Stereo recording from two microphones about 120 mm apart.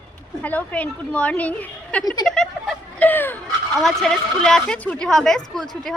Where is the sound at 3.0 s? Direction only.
15° left (ahead or behind).